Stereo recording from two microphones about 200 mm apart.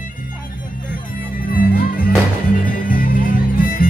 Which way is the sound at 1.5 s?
45° left (ahead or behind).